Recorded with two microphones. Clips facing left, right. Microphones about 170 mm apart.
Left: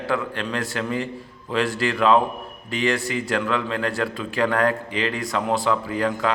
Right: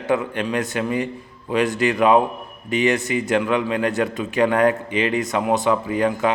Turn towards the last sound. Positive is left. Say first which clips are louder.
# right 3 dB
turn(degrees=-20)  # may be behind; listen again after turning